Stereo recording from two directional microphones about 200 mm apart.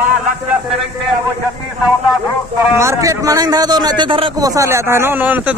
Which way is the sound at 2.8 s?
15° right (ahead or behind).